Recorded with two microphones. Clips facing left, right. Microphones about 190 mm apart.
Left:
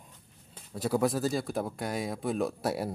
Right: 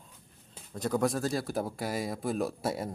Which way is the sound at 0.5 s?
5° left (ahead or behind).